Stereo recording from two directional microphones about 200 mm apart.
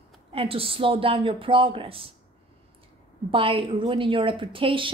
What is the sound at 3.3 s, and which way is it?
A woman's voice, 25° right (ahead or behind).